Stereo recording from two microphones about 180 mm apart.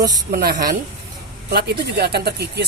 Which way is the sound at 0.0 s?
20° right (ahead or behind).